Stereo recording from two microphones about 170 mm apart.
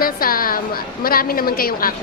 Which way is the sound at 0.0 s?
60° left (ahead or behind).